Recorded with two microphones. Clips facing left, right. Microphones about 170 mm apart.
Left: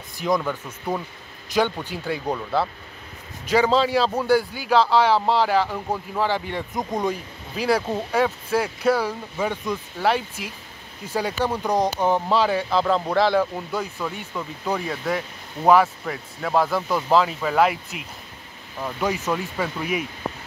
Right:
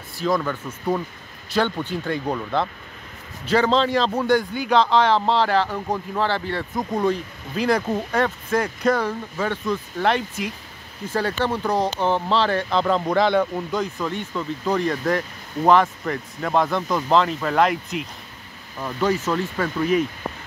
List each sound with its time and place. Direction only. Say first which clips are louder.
0.2 s speech: right 1 dB; 15° left (ahead or behind)